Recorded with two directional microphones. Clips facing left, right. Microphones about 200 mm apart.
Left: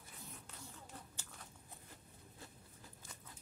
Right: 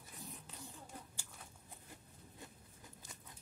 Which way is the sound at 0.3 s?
15° right (ahead or behind).